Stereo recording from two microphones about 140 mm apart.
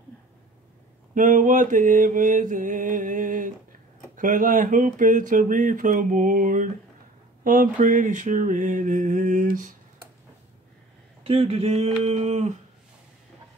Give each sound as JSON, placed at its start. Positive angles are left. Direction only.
{"t": 1.1, "sound": "speech", "side_deg": -70}
{"t": 7.4, "sound": "mantra", "side_deg": -75}
{"t": 11.2, "sound": "speech", "side_deg": -45}